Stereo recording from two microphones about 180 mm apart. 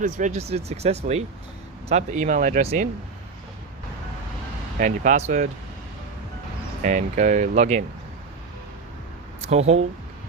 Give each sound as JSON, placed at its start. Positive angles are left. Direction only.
{"t": 0.0, "sound": "speech", "side_deg": -45}
{"t": 4.8, "sound": "speech", "side_deg": -45}
{"t": 6.8, "sound": "speech", "side_deg": -45}
{"t": 9.4, "sound": "speech", "side_deg": -35}